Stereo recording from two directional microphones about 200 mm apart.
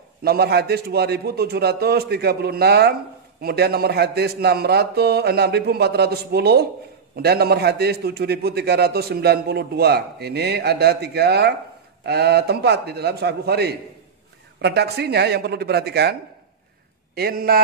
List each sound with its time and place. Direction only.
0.2 s a man's voice: 50° right (ahead or behind)